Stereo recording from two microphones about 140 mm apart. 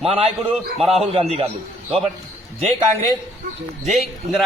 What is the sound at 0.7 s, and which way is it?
Speech, 45° right (ahead or behind).